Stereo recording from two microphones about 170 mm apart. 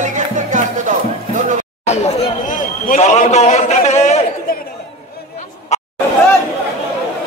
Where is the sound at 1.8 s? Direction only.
40° left (ahead or behind).